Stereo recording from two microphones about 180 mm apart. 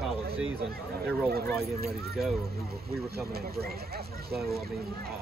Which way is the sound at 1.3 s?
60° right (ahead or behind).